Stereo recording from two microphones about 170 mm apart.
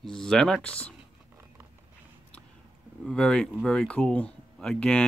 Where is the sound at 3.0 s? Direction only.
5° left (ahead or behind).